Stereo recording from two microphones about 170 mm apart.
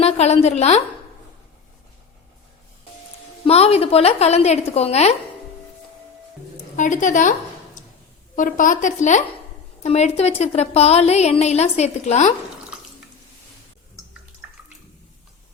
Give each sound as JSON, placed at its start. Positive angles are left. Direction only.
{"t": 0.0, "sound": "a woman's voice", "side_deg": 40}
{"t": 3.4, "sound": "a woman's voice", "side_deg": 35}
{"t": 6.7, "sound": "speech", "side_deg": 50}
{"t": 8.4, "sound": "a woman's voice", "side_deg": 50}